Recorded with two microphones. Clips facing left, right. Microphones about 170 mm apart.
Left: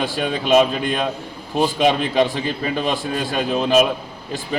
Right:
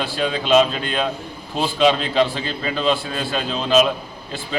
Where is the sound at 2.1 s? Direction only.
15° left (ahead or behind).